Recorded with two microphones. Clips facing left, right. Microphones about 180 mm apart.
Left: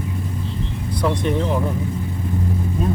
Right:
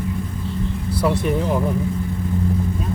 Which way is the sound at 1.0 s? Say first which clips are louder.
Right 1 dB; 5° right (ahead or behind).